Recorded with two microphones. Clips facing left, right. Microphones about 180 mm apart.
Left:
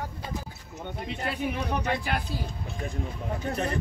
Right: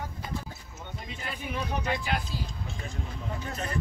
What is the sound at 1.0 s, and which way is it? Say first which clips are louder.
Speech: left 8 dB; 65° left (ahead or behind).